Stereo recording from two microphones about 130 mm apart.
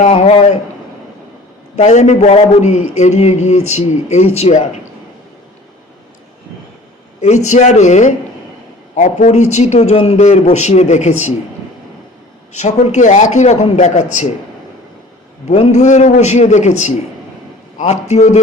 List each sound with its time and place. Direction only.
0.0 s a man's voice: 55° left (ahead or behind)
1.7 s a man's voice: 60° left (ahead or behind)
7.2 s a man's voice: 65° left (ahead or behind)
12.5 s a man's voice: 65° left (ahead or behind)
15.4 s a man's voice: 60° left (ahead or behind)